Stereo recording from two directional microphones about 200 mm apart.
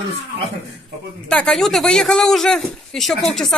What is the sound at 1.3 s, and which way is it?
Speech, 5° left (ahead or behind).